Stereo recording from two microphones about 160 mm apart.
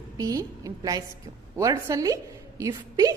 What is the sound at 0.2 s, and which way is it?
A woman's voice, 20° right (ahead or behind).